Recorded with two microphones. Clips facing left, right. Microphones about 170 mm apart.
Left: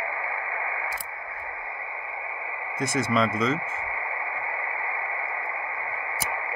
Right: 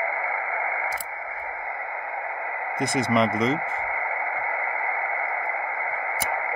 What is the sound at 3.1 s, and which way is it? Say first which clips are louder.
Speech: right 3 dB; 20° right (ahead or behind).